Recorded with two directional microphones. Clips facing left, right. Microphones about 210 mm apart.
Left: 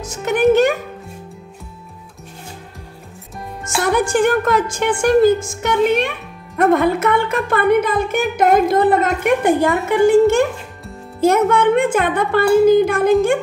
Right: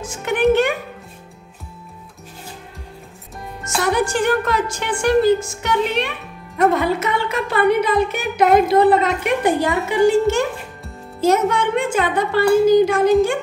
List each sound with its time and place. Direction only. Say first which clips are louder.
0.0 s music: left 2 dB; 40° left (ahead or behind)
3.6 s music: left 1 dB; 50° left (ahead or behind)
11.1 s speech: left 3 dB; 55° left (ahead or behind)